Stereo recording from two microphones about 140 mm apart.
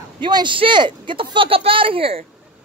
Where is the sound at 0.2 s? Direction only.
35° right (ahead or behind).